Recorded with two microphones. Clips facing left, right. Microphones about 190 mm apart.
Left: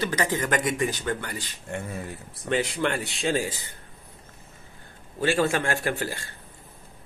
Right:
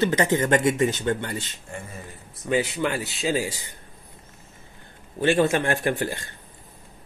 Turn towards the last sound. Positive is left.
turn(degrees=-20)  # may be behind; listen again after turning